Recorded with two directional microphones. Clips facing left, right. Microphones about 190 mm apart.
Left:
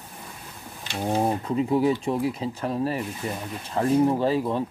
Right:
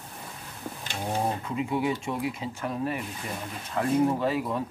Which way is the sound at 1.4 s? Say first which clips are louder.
Left 6 dB; 35° left (ahead or behind).